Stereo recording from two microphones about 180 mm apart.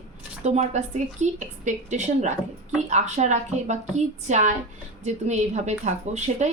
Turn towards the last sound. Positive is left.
turn(degrees=-40)  # may be behind; listen again after turning